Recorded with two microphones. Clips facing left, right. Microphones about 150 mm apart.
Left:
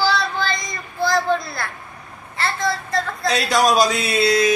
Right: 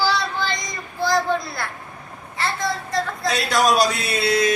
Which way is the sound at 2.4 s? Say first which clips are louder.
Left 2 dB; 15° right (ahead or behind).